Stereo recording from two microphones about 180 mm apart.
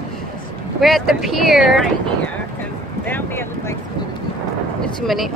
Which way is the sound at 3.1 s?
10° left (ahead or behind).